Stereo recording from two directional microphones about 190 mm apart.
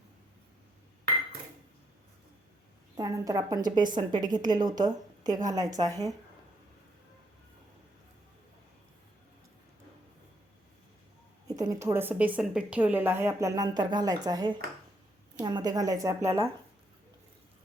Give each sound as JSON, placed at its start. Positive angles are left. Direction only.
{"t": 2.9, "sound": "a woman's voice", "side_deg": -15}
{"t": 11.4, "sound": "a woman's voice", "side_deg": -20}